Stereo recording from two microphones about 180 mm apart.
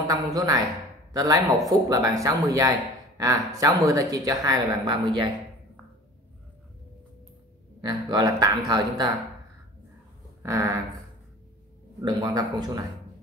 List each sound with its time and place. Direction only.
0.3 s a woman's voice: 20° right (ahead or behind)
7.8 s a woman's voice: 20° right (ahead or behind)
10.4 s a sound: 15° right (ahead or behind)
12.0 s a woman's voice: 25° right (ahead or behind)